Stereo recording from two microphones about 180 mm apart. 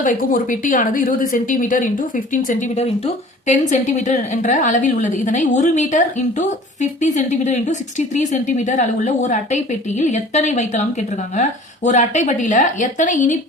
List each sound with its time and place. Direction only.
0.0 s speech: 50° left (ahead or behind)